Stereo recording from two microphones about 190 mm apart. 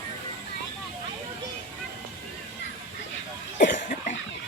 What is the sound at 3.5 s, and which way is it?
Cough, 45° left (ahead or behind).